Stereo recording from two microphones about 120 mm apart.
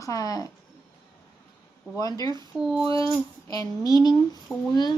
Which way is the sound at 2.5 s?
5° right (ahead or behind).